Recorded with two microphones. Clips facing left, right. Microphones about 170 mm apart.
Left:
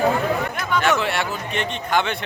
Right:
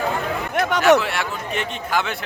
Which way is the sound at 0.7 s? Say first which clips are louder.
Right 5 dB; 70° right (ahead or behind).